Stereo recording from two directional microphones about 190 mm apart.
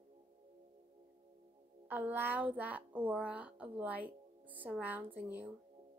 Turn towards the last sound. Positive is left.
turn(degrees=-10)  # may be behind; listen again after turning